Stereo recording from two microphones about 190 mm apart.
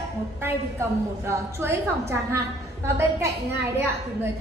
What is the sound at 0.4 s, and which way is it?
A woman's voice, 15° right (ahead or behind).